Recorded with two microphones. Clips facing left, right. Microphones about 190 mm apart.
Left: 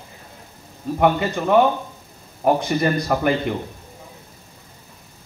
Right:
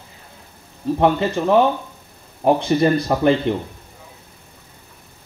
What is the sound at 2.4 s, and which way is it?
A man's voice, 30° right (ahead or behind).